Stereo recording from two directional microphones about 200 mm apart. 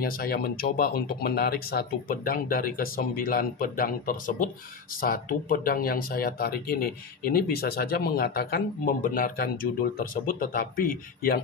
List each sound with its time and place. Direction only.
0.0 s speech: 50° left (ahead or behind)